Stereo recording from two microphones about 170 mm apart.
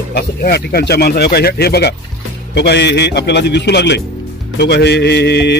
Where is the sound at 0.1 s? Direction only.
70° left (ahead or behind).